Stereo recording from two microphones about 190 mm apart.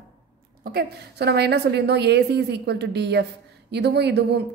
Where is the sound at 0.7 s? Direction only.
55° right (ahead or behind).